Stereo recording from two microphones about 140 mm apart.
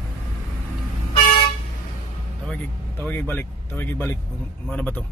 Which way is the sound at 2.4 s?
10° left (ahead or behind).